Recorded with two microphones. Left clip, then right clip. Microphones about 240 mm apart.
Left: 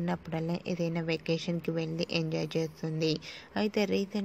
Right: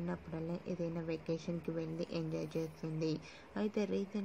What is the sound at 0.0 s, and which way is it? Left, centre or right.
Speech, left.